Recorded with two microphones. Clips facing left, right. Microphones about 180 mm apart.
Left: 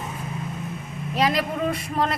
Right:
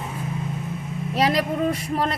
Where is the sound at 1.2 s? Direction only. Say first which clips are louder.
Right 1 dB; 40° right (ahead or behind).